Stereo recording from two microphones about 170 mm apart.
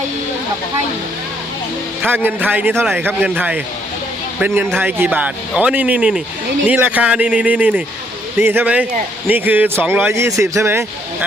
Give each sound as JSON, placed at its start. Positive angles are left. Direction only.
{"t": 2.0, "sound": "a man's voice", "side_deg": -10}